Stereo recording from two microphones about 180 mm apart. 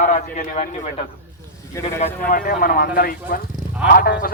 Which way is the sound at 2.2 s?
50° left (ahead or behind).